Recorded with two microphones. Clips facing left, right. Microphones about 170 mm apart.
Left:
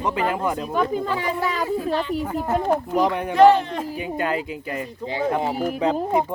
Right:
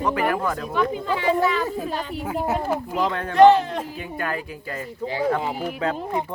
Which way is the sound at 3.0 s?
15° left (ahead or behind).